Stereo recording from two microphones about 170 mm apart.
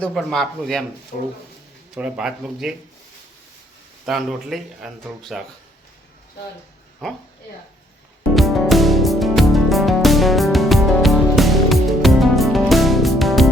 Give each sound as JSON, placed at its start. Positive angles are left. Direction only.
{"t": 0.0, "sound": "speech", "side_deg": 0}
{"t": 2.0, "sound": "speech", "side_deg": -5}
{"t": 4.0, "sound": "speech", "side_deg": 0}
{"t": 8.4, "sound": "music", "side_deg": 0}